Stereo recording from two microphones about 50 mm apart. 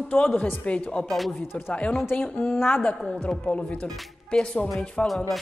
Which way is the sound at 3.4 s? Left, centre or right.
Left.